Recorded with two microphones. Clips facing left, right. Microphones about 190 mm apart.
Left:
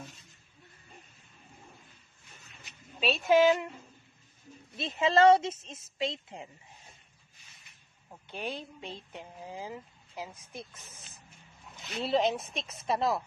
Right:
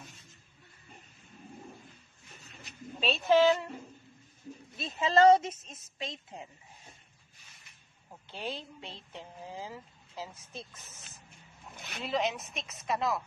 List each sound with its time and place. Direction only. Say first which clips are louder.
3.0 s speech: left 1 dB; 10° left (ahead or behind)
4.7 s a woman's voice: left 1 dB; 25° left (ahead or behind)
8.3 s speech: left 1 dB; 15° left (ahead or behind)
12.0 s speech: left 4 dB; 30° left (ahead or behind)